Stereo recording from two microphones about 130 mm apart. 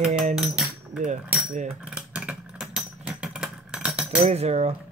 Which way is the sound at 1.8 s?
5° right (ahead or behind).